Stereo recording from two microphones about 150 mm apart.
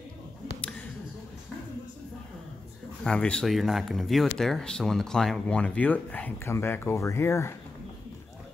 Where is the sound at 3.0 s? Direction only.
5° left (ahead or behind).